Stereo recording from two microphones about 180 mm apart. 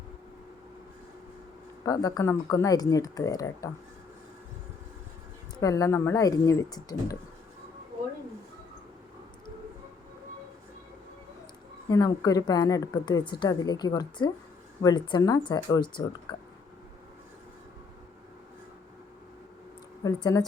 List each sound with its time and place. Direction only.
1.8 s a woman's voice: 20° left (ahead or behind)
5.5 s a woman's voice: 20° left (ahead or behind)
11.9 s a woman's voice: 20° left (ahead or behind)
20.1 s a woman's voice: 20° left (ahead or behind)